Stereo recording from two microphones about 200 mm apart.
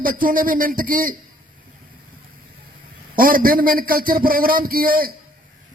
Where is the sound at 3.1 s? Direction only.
45° right (ahead or behind).